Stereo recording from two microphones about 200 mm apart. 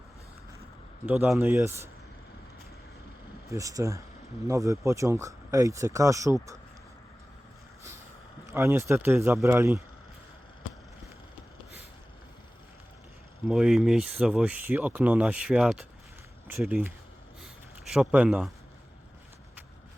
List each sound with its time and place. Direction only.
1.0 s speech: 5° right (ahead or behind)
3.5 s speech: 15° right (ahead or behind)
8.4 s speech: 15° right (ahead or behind)
13.5 s speech: centre (ahead or behind)
17.9 s speech: 5° right (ahead or behind)